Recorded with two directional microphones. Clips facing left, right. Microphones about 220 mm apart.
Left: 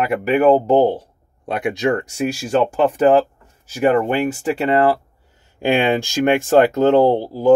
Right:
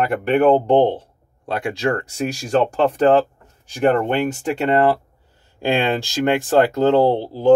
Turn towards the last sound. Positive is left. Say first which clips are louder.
# left 2 dB
turn(degrees=15)  # may be behind; listen again after turning